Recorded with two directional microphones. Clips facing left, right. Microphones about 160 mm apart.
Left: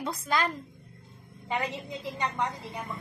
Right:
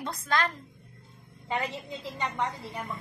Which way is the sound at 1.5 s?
20° left (ahead or behind).